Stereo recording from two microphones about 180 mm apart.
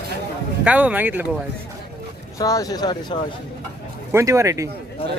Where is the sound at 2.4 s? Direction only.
20° left (ahead or behind).